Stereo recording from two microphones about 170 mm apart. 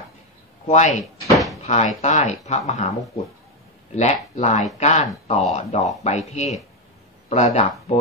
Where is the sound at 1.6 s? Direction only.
40° left (ahead or behind).